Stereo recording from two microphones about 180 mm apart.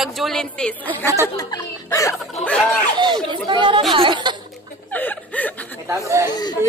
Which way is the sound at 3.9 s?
25° right (ahead or behind).